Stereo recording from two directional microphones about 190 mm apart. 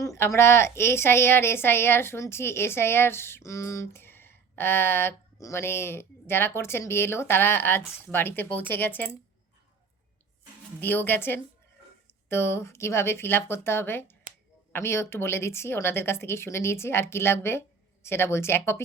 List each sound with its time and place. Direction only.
0.0 s a sound: 15° left (ahead or behind)
0.3 s a woman's voice: 15° left (ahead or behind)
10.8 s a woman's voice: 10° left (ahead or behind)